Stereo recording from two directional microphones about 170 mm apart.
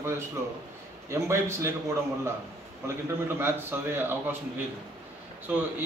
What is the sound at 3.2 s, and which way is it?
A man's voice, 15° right (ahead or behind).